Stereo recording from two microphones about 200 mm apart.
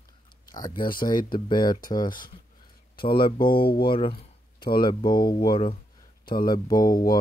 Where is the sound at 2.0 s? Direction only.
45° left (ahead or behind).